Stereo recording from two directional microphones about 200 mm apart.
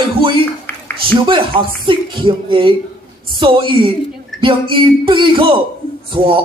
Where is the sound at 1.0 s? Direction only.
25° right (ahead or behind).